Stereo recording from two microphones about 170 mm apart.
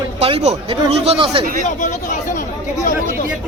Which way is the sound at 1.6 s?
50° left (ahead or behind).